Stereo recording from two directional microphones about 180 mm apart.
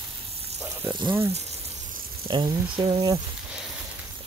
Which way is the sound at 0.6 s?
15° right (ahead or behind).